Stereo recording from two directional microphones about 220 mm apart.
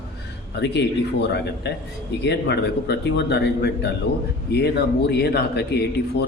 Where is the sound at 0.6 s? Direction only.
50° left (ahead or behind).